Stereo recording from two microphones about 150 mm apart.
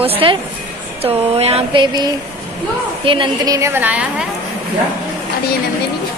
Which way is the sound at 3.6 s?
15° right (ahead or behind).